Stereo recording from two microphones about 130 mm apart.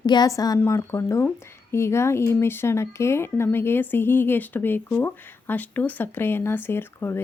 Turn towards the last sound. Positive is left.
turn(degrees=15)  # may be behind; listen again after turning